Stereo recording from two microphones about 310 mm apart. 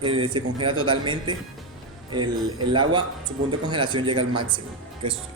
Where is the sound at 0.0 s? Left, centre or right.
Centre.